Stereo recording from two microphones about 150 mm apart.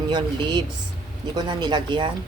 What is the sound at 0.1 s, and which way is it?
Speech, 30° right (ahead or behind).